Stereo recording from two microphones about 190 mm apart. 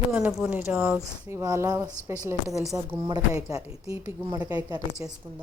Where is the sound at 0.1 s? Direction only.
5° right (ahead or behind).